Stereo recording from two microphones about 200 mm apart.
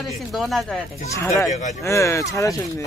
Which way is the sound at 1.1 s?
15° left (ahead or behind).